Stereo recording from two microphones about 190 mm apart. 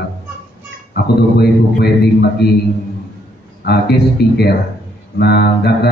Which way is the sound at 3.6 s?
55° left (ahead or behind).